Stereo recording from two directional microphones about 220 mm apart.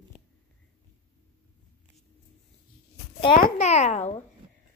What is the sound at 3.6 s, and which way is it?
Speech, 30° left (ahead or behind).